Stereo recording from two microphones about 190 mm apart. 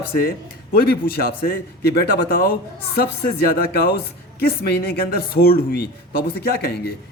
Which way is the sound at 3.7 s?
55° left (ahead or behind).